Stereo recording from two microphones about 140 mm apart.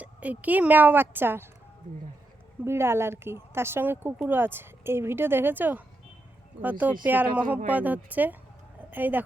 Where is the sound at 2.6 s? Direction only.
15° right (ahead or behind).